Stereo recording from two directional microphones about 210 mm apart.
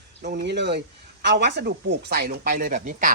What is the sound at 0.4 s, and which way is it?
Speech, 55° right (ahead or behind).